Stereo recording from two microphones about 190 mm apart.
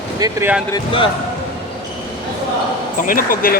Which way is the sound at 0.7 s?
25° left (ahead or behind).